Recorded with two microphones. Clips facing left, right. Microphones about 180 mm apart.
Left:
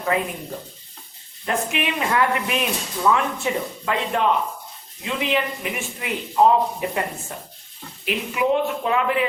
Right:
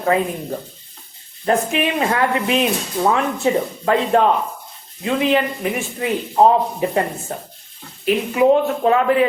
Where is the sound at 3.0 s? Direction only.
40° right (ahead or behind).